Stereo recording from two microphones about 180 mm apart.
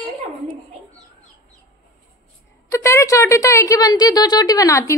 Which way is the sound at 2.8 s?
15° left (ahead or behind).